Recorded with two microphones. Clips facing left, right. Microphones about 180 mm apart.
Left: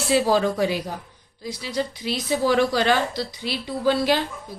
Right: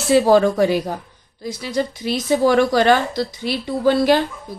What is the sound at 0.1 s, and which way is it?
A woman's voice, 55° right (ahead or behind).